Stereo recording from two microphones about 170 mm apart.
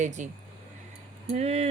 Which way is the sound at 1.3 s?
35° right (ahead or behind).